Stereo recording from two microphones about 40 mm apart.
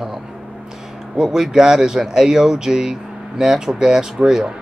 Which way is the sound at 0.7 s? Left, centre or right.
Centre.